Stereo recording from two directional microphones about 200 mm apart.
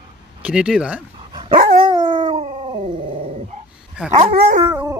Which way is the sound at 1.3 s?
25° right (ahead or behind).